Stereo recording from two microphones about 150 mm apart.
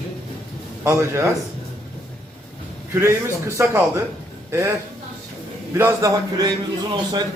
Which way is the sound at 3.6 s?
15° right (ahead or behind).